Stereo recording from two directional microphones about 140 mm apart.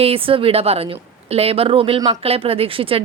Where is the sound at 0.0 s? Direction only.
40° right (ahead or behind).